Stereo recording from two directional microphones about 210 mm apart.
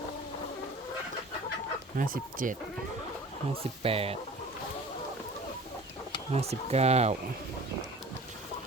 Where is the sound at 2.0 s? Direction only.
40° right (ahead or behind).